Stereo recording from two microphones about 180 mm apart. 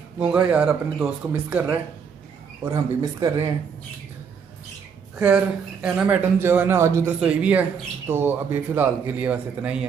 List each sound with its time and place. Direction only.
0.2 s a man's voice: 5° right (ahead or behind)
2.6 s a man's voice: 20° right (ahead or behind)
5.2 s a man's voice: 5° right (ahead or behind)